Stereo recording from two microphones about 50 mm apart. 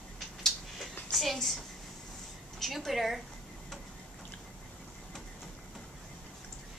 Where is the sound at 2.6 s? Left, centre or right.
Centre.